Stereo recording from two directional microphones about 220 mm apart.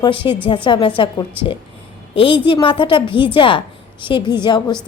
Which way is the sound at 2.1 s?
25° left (ahead or behind).